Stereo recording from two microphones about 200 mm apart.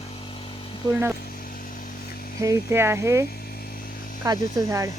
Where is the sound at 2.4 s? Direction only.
15° right (ahead or behind).